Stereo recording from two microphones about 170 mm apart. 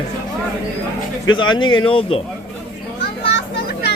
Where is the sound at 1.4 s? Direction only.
30° left (ahead or behind).